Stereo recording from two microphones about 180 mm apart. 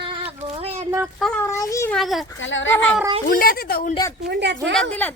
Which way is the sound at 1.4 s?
15° left (ahead or behind).